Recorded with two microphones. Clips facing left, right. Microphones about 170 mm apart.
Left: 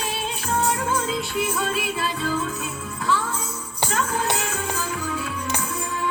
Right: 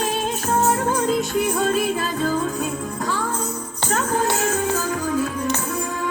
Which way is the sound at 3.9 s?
45° right (ahead or behind).